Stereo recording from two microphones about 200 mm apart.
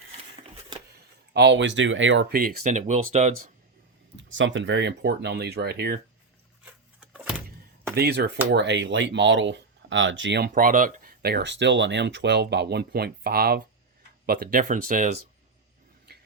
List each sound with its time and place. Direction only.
1.3 s speech: 60° right (ahead or behind)
2.3 s speech: 40° right (ahead or behind)
4.2 s speech: 70° right (ahead or behind); by 6.0 s 55° right (ahead or behind)
6.7 s a sound: 5° right (ahead or behind)
7.9 s speech: 55° right (ahead or behind)